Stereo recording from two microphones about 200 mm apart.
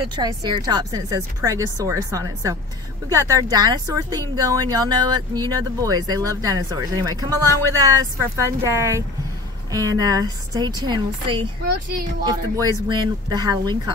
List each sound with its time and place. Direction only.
0.1 s speech: 20° right (ahead or behind)